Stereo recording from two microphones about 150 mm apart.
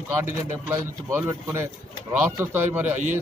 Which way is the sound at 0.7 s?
15° right (ahead or behind).